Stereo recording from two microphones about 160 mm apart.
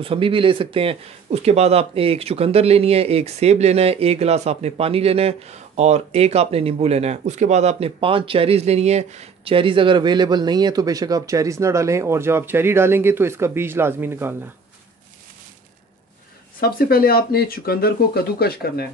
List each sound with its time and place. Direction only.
0.0 s speech: 35° right (ahead or behind); by 14.5 s 15° right (ahead or behind)
16.5 s speech: 70° left (ahead or behind)